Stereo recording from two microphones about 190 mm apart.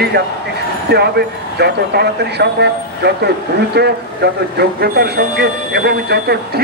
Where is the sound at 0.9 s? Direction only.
60° right (ahead or behind).